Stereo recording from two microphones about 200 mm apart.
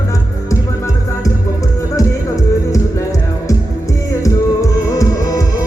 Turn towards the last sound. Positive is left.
turn(degrees=15)  # may be behind; listen again after turning